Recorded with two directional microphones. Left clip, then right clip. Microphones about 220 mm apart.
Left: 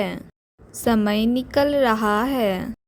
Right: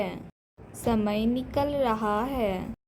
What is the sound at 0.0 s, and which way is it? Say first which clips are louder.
A woman's voice: left 5 dB; 35° left (ahead or behind).